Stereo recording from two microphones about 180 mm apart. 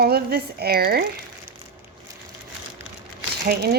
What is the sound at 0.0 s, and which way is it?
Speech, 60° right (ahead or behind).